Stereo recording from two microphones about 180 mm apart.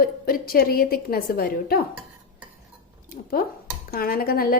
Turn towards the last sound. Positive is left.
turn(degrees=55)  # may be behind; listen again after turning